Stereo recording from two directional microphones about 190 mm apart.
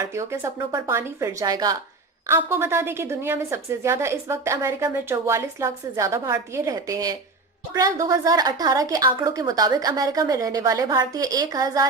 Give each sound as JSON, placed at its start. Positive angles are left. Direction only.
{"t": 0.0, "sound": "a woman's voice", "side_deg": -15}